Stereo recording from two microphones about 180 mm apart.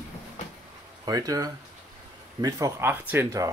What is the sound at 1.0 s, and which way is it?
Speech, 20° right (ahead or behind).